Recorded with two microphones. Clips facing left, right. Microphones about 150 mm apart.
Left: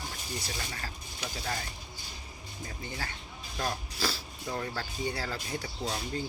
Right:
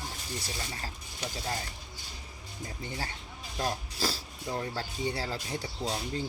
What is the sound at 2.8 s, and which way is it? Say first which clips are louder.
Speech: right 2 dB; 30° right (ahead or behind).